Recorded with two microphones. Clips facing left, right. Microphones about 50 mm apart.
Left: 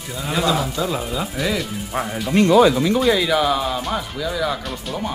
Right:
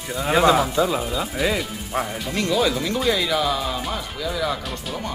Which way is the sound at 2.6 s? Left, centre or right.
Centre.